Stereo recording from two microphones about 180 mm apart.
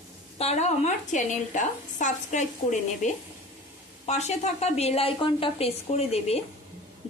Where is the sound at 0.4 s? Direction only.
35° left (ahead or behind).